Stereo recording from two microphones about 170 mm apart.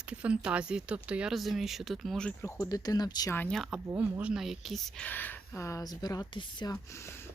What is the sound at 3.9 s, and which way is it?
Speech, 10° right (ahead or behind).